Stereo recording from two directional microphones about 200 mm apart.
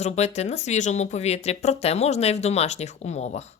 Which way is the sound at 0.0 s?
35° left (ahead or behind).